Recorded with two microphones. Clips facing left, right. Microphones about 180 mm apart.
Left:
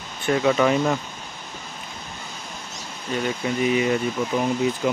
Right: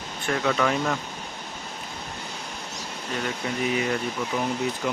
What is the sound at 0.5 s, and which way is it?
Speech, 15° left (ahead or behind).